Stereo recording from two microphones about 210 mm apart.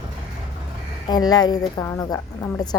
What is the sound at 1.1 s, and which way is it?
Speech, 20° left (ahead or behind).